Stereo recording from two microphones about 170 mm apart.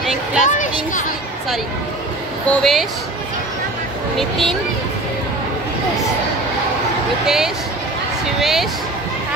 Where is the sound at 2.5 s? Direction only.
Centre (ahead or behind).